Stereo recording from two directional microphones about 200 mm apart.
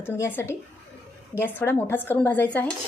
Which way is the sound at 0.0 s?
10° left (ahead or behind).